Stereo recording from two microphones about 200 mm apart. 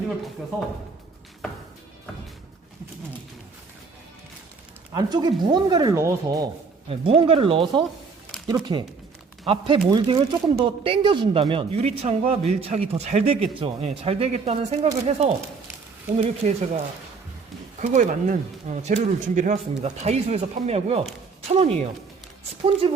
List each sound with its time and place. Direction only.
4.9 s speech: 20° right (ahead or behind)
6.8 s speech: 30° right (ahead or behind)
16.1 s speech: 35° right (ahead or behind)